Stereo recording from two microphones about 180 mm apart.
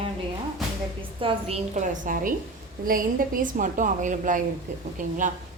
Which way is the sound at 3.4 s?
45° right (ahead or behind).